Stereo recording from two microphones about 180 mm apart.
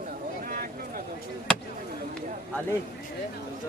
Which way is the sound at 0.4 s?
50° right (ahead or behind).